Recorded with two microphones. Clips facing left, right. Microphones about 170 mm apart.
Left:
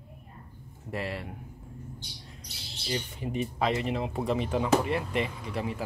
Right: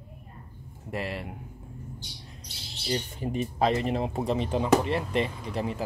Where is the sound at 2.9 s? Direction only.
40° right (ahead or behind).